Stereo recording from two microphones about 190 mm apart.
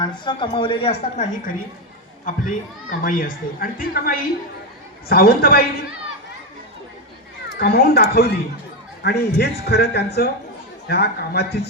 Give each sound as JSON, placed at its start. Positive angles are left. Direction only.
{"t": 0.0, "sound": "a woman's voice", "side_deg": 25}
{"t": 3.0, "sound": "a woman's voice", "side_deg": 45}
{"t": 7.6, "sound": "speech", "side_deg": 55}